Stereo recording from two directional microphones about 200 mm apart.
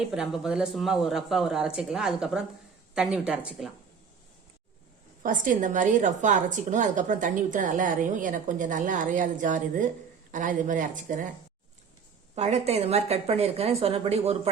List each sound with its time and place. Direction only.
0.0 s speech: 5° right (ahead or behind)
5.2 s a woman's voice: 40° right (ahead or behind)
12.3 s a woman's voice: 35° right (ahead or behind)